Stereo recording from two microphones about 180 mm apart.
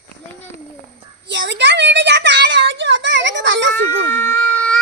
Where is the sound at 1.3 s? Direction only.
85° right.